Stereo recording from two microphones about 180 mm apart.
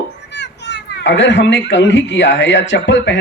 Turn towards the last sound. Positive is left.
turn(degrees=90)